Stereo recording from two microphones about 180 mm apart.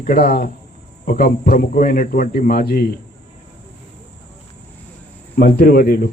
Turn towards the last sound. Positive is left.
turn(degrees=55)  # may be behind; listen again after turning